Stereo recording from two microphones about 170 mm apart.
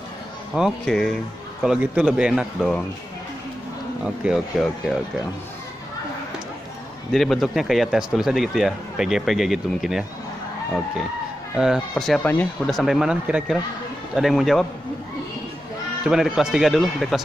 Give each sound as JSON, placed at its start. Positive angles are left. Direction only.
{"t": 0.6, "sound": "speech", "side_deg": 0}
{"t": 4.0, "sound": "speech", "side_deg": -5}
{"t": 7.1, "sound": "speech", "side_deg": 0}
{"t": 11.5, "sound": "speech", "side_deg": -5}
{"t": 12.7, "sound": "speech", "side_deg": 0}
{"t": 16.1, "sound": "speech", "side_deg": 0}